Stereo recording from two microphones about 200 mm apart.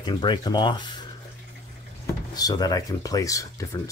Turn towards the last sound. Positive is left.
turn(degrees=15)  # may be behind; listen again after turning